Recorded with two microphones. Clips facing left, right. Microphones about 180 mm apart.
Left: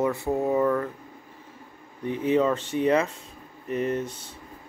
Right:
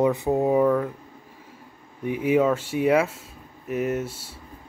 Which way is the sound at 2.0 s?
10° right (ahead or behind).